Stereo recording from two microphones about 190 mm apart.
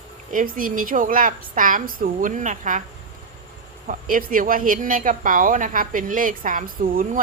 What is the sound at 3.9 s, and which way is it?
A woman's voice, 45° right (ahead or behind).